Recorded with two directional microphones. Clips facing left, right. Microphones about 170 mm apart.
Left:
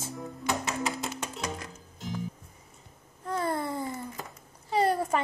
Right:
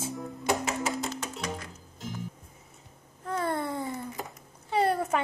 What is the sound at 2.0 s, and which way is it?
Music, centre (ahead or behind).